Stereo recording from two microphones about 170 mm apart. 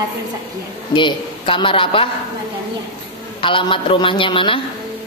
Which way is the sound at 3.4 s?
30° left (ahead or behind).